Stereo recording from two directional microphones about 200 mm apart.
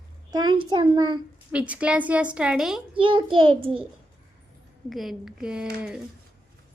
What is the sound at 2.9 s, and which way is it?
Speech, 25° right (ahead or behind).